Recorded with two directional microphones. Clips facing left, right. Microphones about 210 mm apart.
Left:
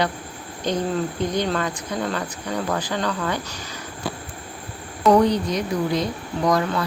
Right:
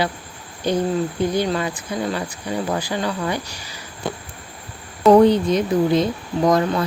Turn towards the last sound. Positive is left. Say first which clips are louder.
# right 3 dB
turn(degrees=-25)  # may be behind; listen again after turning